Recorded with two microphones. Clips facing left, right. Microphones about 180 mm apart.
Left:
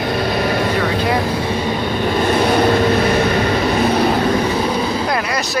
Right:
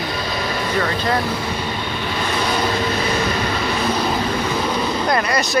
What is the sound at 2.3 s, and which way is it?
Vehicle, 50° left (ahead or behind).